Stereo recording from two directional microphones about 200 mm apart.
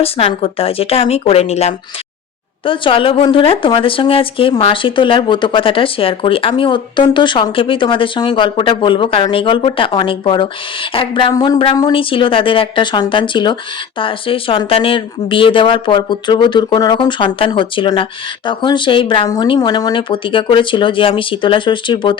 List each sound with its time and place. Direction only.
0.0 s speech: 30° left (ahead or behind)